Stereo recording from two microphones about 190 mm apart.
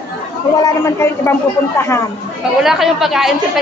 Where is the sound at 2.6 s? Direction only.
Centre (ahead or behind).